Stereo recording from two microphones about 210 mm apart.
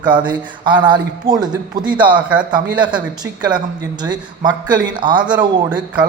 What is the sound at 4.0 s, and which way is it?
A man's voice, 20° right (ahead or behind).